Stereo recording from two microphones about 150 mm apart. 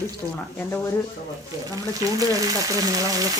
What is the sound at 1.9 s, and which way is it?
Speech, 25° right (ahead or behind).